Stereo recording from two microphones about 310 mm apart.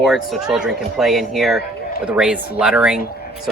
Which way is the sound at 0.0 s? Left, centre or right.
Centre.